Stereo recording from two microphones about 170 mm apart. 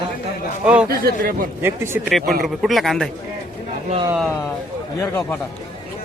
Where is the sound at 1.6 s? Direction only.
15° right (ahead or behind).